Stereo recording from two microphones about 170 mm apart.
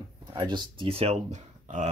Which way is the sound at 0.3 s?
25° right (ahead or behind).